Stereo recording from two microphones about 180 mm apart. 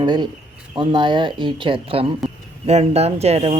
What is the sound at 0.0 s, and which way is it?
Speech, 25° right (ahead or behind).